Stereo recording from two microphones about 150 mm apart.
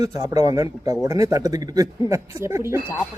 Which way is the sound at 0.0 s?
25° right (ahead or behind).